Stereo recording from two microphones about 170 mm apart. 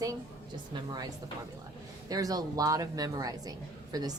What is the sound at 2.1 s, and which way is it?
A woman's voice, 20° right (ahead or behind).